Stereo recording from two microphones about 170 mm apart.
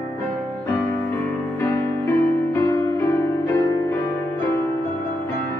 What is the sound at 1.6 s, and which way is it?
Music, 10° left (ahead or behind).